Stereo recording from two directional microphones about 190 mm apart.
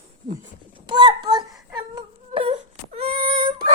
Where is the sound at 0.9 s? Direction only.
25° right (ahead or behind).